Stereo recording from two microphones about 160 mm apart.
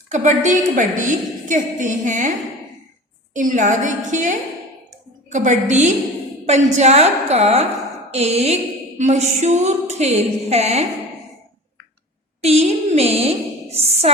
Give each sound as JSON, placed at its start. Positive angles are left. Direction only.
{"t": 0.1, "sound": "a woman's voice", "side_deg": -50}
{"t": 3.3, "sound": "a woman's voice", "side_deg": -50}
{"t": 12.4, "sound": "a sound", "side_deg": -40}